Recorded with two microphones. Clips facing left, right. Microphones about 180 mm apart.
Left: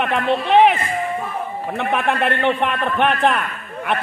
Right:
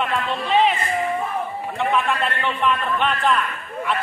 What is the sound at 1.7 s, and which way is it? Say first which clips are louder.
A man's voice: left 1 dB; 60° left (ahead or behind).